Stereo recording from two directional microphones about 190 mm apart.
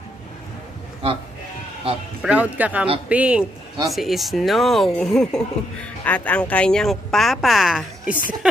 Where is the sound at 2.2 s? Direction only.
5° right (ahead or behind).